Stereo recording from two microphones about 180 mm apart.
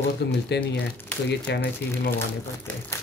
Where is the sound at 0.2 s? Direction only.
65° left (ahead or behind).